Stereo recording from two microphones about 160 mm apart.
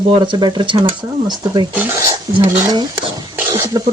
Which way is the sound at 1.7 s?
15° right (ahead or behind).